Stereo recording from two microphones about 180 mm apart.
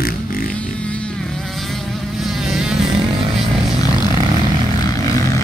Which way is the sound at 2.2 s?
Centre (ahead or behind).